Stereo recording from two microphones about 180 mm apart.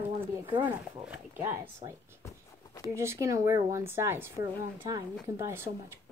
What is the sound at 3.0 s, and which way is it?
A woman's voice, 15° right (ahead or behind).